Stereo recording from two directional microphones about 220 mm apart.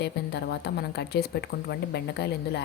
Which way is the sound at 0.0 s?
50° left (ahead or behind).